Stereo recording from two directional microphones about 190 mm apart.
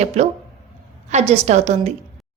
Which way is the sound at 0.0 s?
35° right (ahead or behind).